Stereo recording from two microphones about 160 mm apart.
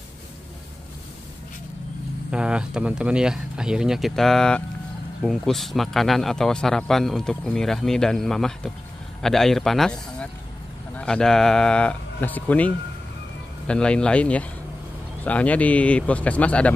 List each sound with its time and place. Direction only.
2.3 s speech: 5° right (ahead or behind)